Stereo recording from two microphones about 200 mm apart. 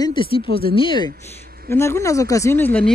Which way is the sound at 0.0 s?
25° left (ahead or behind).